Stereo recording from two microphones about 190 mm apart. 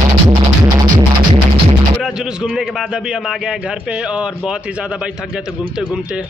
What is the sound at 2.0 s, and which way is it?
A man's voice, 5° right (ahead or behind).